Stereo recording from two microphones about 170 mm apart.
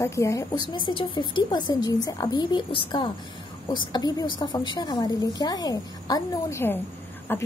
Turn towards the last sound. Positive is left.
turn(degrees=15)  # may be behind; listen again after turning